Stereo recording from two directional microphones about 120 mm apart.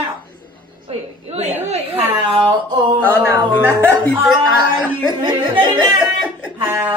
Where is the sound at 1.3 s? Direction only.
65° right (ahead or behind).